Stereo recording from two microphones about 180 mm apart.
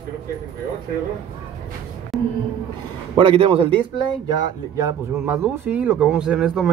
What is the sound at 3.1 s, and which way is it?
Speech, 30° right (ahead or behind).